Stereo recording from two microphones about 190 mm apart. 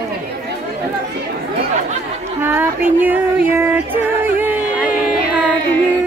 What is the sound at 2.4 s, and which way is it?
Music, 10° right (ahead or behind).